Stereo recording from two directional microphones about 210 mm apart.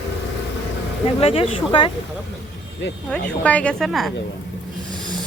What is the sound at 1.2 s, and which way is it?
Speech, 25° left (ahead or behind).